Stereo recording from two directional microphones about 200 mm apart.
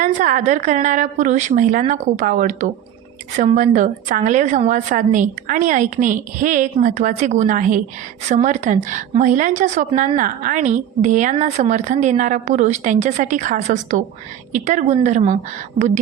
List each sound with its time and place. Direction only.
0.0 s a woman's voice: 40° right (ahead or behind)